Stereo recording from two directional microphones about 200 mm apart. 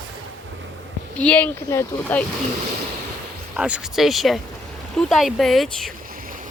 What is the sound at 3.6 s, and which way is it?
Speech, 5° right (ahead or behind).